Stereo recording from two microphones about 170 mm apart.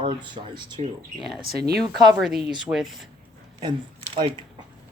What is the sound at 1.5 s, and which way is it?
Speech, 65° right (ahead or behind).